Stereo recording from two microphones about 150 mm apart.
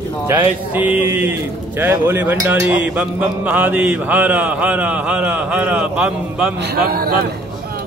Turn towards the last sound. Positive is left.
turn(degrees=-85)